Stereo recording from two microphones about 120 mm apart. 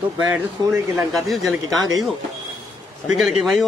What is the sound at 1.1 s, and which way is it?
Speech, centre (ahead or behind).